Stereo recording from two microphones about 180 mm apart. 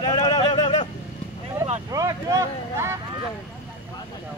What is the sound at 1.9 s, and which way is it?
Speech, 20° right (ahead or behind).